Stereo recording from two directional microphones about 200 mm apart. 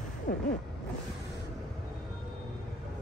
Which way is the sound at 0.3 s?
45° left (ahead or behind).